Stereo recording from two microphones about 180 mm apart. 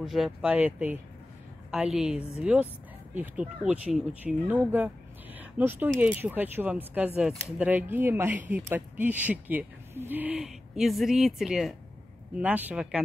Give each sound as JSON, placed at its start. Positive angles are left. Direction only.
{"t": 0.0, "sound": "a woman's voice", "side_deg": 0}
{"t": 5.4, "sound": "a sound", "side_deg": -10}
{"t": 5.9, "sound": "speech", "side_deg": -10}